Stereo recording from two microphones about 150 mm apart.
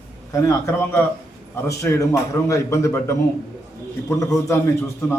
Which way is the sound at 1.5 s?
20° left (ahead or behind).